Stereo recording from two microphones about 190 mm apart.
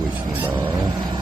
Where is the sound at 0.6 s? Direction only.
20° right (ahead or behind).